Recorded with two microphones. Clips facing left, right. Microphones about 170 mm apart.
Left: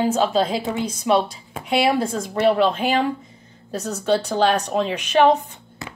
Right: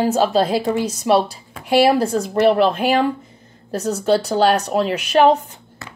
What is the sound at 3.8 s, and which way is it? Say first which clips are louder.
Speech: right 3 dB; 30° right (ahead or behind).